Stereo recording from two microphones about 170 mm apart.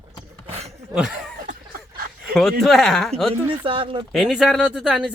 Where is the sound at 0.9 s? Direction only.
Centre (ahead or behind).